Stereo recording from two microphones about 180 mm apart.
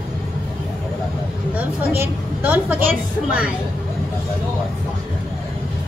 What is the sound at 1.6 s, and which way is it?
A woman's voice, 10° right (ahead or behind).